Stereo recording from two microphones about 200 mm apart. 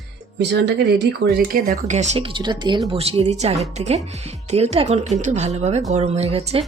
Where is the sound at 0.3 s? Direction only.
60° right (ahead or behind).